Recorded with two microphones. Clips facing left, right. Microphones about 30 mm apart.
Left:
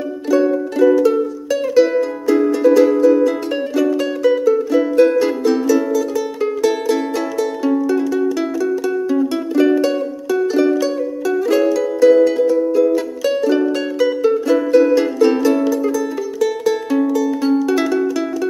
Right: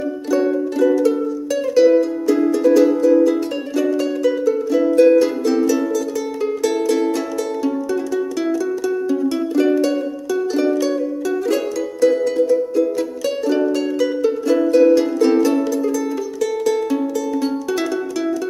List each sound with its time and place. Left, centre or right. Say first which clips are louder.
0.3 s music: left 3 dB; centre